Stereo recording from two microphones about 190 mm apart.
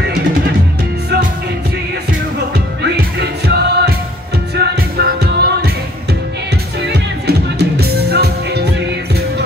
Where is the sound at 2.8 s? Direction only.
60° right (ahead or behind).